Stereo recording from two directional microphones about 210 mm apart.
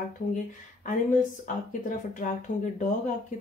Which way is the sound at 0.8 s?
40° left (ahead or behind).